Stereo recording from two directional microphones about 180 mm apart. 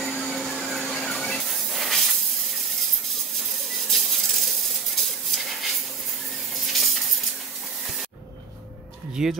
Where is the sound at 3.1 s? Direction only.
Centre (ahead or behind).